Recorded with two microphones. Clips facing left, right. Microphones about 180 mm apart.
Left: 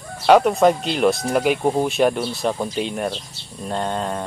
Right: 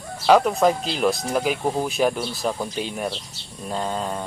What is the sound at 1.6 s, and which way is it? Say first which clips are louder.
Speech: left 4 dB; 15° left (ahead or behind).